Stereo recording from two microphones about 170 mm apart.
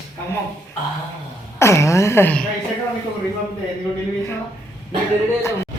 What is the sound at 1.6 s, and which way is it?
Speech, 15° left (ahead or behind).